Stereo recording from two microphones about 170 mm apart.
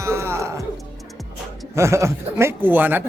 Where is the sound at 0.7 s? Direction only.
Centre (ahead or behind).